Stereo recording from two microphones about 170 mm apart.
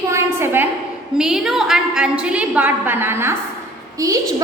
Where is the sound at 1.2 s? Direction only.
Centre (ahead or behind).